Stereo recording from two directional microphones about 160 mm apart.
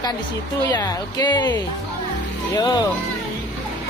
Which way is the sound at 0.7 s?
25° left (ahead or behind).